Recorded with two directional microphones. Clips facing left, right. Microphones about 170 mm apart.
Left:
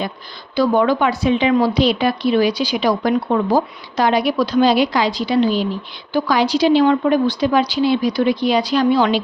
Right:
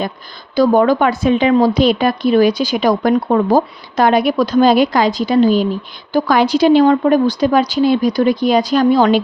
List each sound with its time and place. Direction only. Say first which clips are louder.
0.5 s speech: right 4 dB; 45° right (ahead or behind)